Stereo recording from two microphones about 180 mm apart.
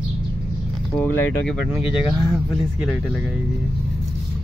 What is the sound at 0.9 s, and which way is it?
Speech, 10° left (ahead or behind).